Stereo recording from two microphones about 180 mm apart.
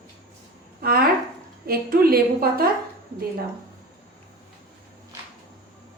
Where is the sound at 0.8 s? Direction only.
55° right (ahead or behind).